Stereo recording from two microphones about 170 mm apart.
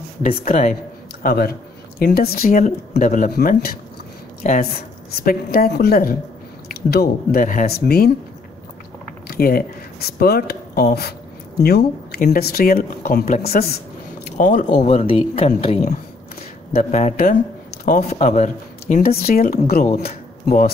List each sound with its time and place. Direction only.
0.2 s speech: 45° left (ahead or behind)
1.2 s speech: 65° left (ahead or behind); by 3.3 s 50° left (ahead or behind)
4.4 s a woman's voice: 55° left (ahead or behind)
9.3 s speech: 60° left (ahead or behind)
14.3 s speech: 50° left (ahead or behind)
17.8 s a woman's voice: 55° left (ahead or behind)
18.1 s a woman's voice: 45° left (ahead or behind); by 20.7 s 60° left (ahead or behind)